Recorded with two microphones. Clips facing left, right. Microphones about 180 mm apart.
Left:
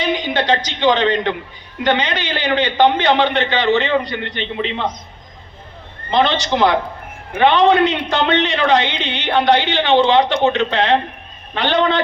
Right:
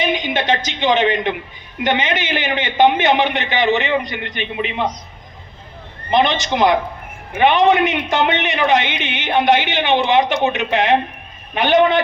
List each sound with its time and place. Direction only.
0.0 s a woman's voice: 20° right (ahead or behind)
6.1 s a man's voice: 20° right (ahead or behind)